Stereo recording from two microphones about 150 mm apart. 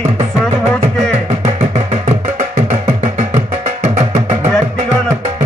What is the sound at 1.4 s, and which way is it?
Music, 50° right (ahead or behind).